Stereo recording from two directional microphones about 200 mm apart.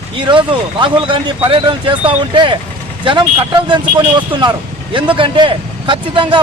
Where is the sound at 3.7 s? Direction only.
20° right (ahead or behind).